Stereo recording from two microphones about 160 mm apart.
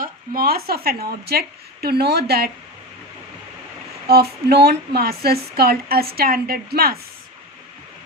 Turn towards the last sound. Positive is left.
turn(degrees=-75)  # may be behind; listen again after turning